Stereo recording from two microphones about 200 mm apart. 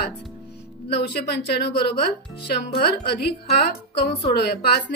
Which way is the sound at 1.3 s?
55° left (ahead or behind).